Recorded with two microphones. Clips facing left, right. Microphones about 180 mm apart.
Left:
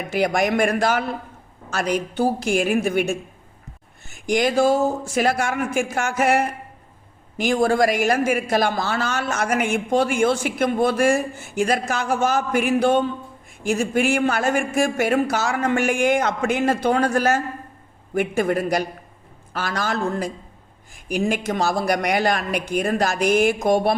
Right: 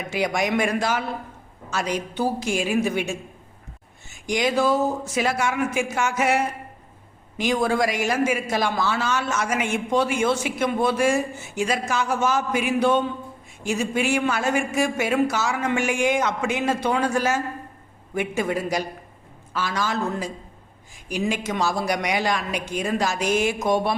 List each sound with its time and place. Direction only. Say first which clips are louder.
0.1 s a man's voice: left 3 dB; 55° left (ahead or behind)